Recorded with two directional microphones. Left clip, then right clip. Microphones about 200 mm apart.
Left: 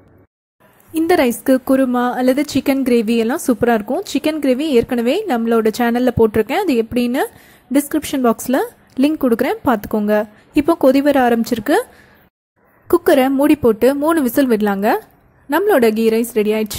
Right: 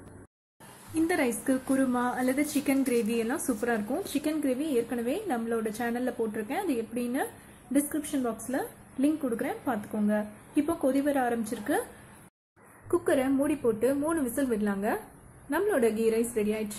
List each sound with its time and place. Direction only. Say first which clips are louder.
0.9 s a woman's voice: left 13 dB; 50° left (ahead or behind)
12.8 s a woman's voice: left 14 dB; 45° left (ahead or behind)